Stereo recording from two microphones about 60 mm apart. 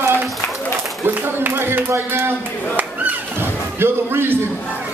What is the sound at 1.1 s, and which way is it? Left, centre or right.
A child's voice, right.